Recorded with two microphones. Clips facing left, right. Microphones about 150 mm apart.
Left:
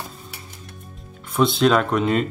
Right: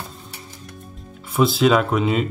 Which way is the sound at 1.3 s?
5° right (ahead or behind).